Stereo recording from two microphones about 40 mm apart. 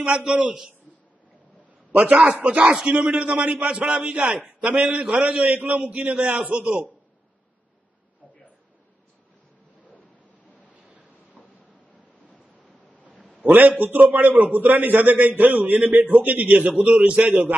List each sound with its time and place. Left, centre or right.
0.0 s a man's voice: right
1.9 s a man's voice: right
2.9 s a man's voice: right
4.0 s a man's voice: right
5.4 s a man's voice: right
13.4 s a man's voice: right